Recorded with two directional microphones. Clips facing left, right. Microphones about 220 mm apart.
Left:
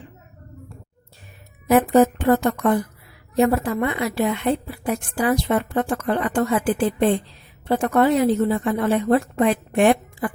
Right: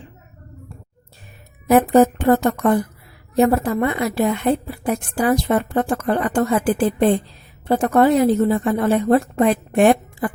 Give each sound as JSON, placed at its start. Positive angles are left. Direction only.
{"t": 1.6, "sound": "a woman's voice", "side_deg": -45}